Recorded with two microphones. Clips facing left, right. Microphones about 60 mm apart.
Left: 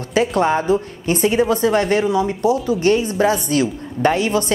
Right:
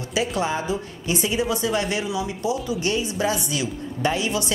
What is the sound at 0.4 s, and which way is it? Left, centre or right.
A woman's voice, left.